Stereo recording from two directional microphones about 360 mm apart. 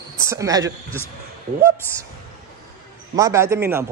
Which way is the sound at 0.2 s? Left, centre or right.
Centre.